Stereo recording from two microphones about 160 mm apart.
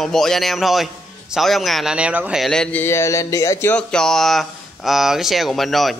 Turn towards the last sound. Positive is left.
turn(degrees=0)  # may be behind; listen again after turning